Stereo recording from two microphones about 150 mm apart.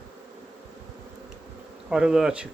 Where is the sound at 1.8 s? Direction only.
5° right (ahead or behind).